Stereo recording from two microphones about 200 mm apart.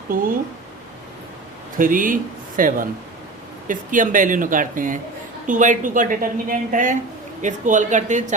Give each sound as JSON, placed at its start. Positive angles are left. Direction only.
{"t": 0.1, "sound": "speech", "side_deg": -45}
{"t": 1.8, "sound": "a woman's voice", "side_deg": -45}